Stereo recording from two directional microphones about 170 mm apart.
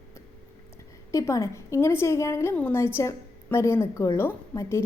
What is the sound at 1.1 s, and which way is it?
A woman's voice, 20° left (ahead or behind).